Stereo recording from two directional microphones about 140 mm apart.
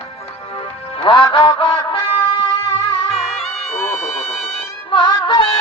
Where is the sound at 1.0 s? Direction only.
35° left (ahead or behind).